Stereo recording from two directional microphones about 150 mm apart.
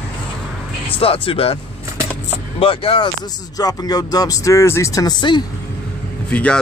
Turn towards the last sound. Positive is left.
turn(degrees=10)  # may be behind; listen again after turning